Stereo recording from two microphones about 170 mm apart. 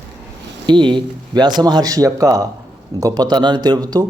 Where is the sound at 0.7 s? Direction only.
30° right (ahead or behind).